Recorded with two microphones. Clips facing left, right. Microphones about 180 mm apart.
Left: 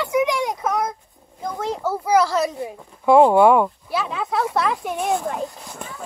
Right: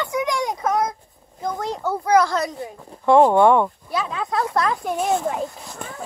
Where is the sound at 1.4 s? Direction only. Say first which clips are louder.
Even; 5° left (ahead or behind).